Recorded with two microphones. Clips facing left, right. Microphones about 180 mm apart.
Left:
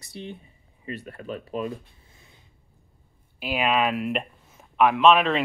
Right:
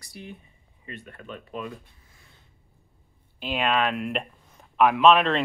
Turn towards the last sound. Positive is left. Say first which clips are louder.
# even
turn(degrees=0)  # may be behind; listen again after turning